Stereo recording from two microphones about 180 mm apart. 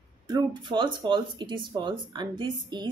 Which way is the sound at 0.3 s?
25° right (ahead or behind).